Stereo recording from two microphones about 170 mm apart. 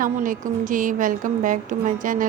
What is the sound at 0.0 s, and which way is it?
A woman's voice, 50° right (ahead or behind).